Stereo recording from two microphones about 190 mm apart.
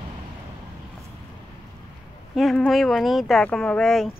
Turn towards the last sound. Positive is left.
turn(degrees=5)  # may be behind; listen again after turning